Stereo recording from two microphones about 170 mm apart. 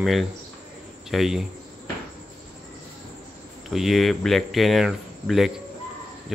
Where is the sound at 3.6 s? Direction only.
Centre (ahead or behind).